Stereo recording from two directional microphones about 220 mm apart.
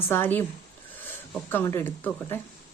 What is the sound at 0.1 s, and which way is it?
A woman's voice, 10° left (ahead or behind).